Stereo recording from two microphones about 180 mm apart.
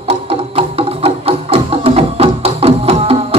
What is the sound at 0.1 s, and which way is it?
Music, 35° right (ahead or behind).